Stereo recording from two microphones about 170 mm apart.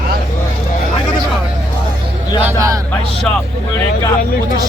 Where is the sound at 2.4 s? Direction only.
15° right (ahead or behind).